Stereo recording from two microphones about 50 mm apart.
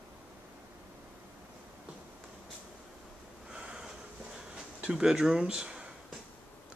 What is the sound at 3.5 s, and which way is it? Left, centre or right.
Snort, centre.